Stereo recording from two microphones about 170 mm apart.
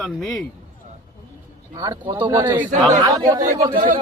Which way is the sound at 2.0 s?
30° right (ahead or behind).